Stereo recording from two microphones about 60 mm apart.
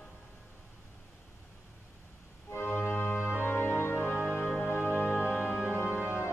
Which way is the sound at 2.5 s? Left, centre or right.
Left.